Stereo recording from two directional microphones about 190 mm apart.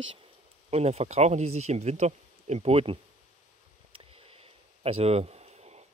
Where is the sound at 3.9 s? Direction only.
30° right (ahead or behind).